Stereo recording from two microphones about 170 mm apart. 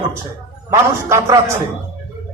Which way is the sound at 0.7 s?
20° right (ahead or behind).